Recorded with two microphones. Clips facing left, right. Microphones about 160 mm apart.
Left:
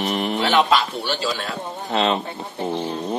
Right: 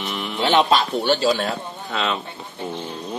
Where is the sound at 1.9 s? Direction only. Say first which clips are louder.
Left 4 dB; 30° left (ahead or behind).